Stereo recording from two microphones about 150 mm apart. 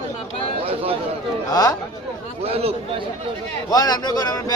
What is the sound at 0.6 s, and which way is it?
Speech, 40° right (ahead or behind).